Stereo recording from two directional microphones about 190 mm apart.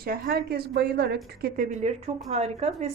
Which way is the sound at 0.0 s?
50° right (ahead or behind).